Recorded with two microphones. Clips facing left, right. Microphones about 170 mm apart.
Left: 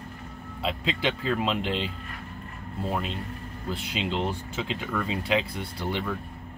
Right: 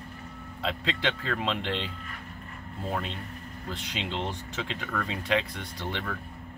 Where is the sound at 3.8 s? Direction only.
10° left (ahead or behind).